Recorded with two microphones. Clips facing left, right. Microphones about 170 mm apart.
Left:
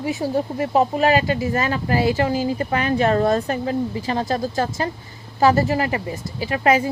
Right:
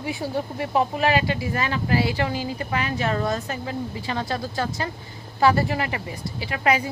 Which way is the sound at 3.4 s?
40° left (ahead or behind).